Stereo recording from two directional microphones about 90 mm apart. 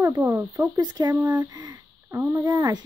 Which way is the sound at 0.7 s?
55° right (ahead or behind).